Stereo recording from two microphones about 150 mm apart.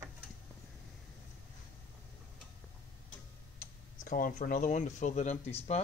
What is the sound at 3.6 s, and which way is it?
Speech, 65° left (ahead or behind).